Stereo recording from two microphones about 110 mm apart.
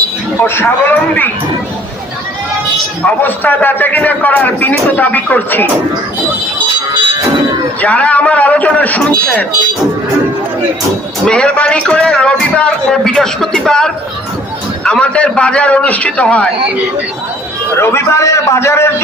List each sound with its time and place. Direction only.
0.4 s a man's voice: 20° left (ahead or behind)
3.0 s a man's voice: 15° left (ahead or behind)
7.8 s a man's voice: 10° left (ahead or behind)
11.3 s a man's voice: 10° left (ahead or behind)
17.7 s a man's voice: 25° left (ahead or behind)